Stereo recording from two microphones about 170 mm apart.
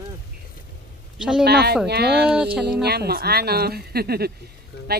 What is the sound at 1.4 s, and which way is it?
Speech, 70° right (ahead or behind).